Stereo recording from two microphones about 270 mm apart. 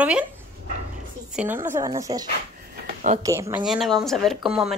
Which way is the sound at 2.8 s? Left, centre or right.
Right.